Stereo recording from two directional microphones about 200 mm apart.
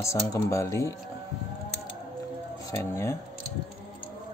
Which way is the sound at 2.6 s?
15° left (ahead or behind).